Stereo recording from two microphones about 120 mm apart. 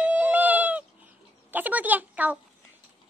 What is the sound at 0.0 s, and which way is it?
Goat, 10° right (ahead or behind).